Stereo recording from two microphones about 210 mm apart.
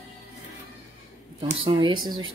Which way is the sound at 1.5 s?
25° right (ahead or behind).